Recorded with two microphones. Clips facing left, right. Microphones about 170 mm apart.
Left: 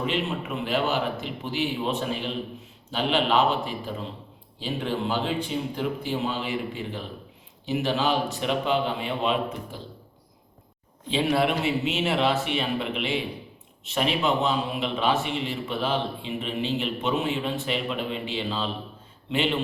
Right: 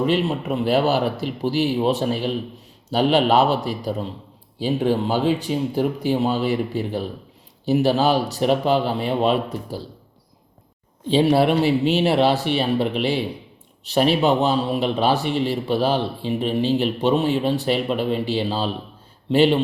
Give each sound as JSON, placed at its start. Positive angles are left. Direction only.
{"t": 0.0, "sound": "speech", "side_deg": -40}
{"t": 11.1, "sound": "speech", "side_deg": -35}